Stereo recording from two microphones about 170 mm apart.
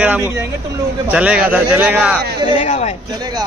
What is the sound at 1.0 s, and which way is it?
A man's voice, 5° right (ahead or behind).